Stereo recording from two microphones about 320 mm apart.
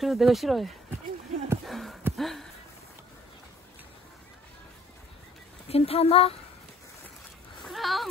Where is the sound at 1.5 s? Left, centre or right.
Centre.